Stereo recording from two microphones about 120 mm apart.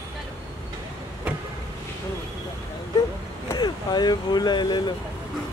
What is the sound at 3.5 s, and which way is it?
Speech, 35° left (ahead or behind).